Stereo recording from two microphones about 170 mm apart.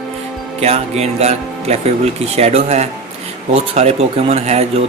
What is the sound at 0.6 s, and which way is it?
Speech, 40° right (ahead or behind).